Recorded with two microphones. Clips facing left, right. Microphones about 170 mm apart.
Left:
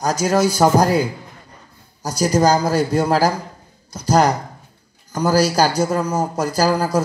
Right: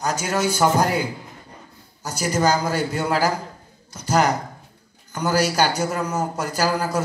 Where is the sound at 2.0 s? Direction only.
35° left (ahead or behind).